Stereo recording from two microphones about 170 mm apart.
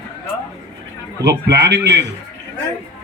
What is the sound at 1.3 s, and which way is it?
Speech, 80° right.